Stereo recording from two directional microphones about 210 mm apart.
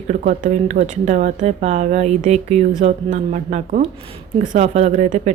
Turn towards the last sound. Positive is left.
turn(degrees=-35)  # may be behind; listen again after turning